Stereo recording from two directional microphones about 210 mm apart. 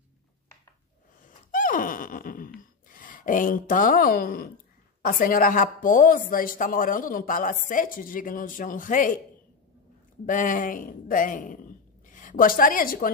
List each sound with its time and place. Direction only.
1.5 s sigh: 40° left (ahead or behind)
5.0 s a woman's voice: 40° left (ahead or behind)
10.2 s speech: 40° left (ahead or behind)